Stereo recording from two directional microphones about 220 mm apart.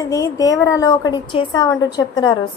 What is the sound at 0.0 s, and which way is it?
A woman's voice, 15° left (ahead or behind).